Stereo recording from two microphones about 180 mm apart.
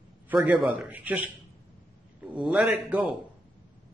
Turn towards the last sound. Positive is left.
turn(degrees=-10)  # may be behind; listen again after turning